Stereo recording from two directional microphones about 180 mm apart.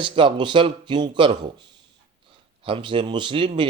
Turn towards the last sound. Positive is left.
turn(degrees=-30)  # may be behind; listen again after turning